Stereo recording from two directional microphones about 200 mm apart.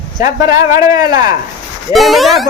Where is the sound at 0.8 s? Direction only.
20° right (ahead or behind).